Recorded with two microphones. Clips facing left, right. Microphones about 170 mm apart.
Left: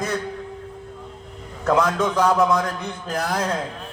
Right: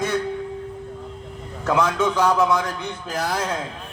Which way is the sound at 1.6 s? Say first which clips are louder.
Left 1 dB; 30° left (ahead or behind).